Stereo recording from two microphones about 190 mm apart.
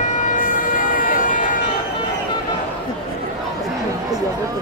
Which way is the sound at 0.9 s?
45° left (ahead or behind).